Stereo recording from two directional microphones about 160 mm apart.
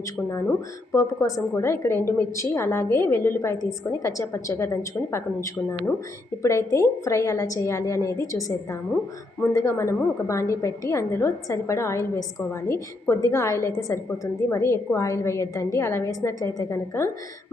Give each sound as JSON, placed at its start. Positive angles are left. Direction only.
{"t": 0.3, "sound": "a woman's voice", "side_deg": 15}